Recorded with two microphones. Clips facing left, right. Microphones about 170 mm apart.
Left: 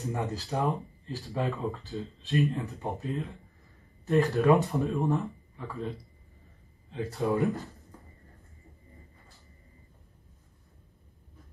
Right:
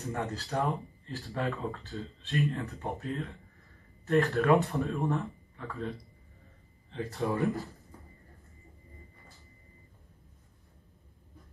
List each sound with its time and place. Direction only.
0.0 s speech: 20° left (ahead or behind)
1.9 s speech: centre (ahead or behind)
2.5 s speech: 20° left (ahead or behind)
6.9 s speech: centre (ahead or behind)